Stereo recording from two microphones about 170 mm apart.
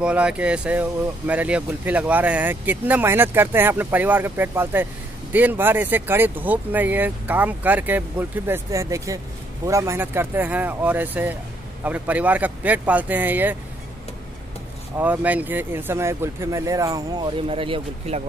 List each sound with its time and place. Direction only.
0.0 s speech: 5° right (ahead or behind)
15.0 s speech: 10° right (ahead or behind)
17.5 s speech: 30° right (ahead or behind)